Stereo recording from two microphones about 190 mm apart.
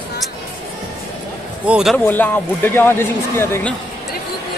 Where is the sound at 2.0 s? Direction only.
10° left (ahead or behind).